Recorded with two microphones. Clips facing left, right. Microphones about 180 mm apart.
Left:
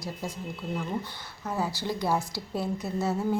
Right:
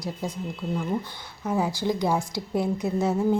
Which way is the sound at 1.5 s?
15° right (ahead or behind).